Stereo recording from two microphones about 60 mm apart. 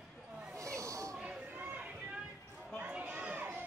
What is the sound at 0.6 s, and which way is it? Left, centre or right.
Snake, right.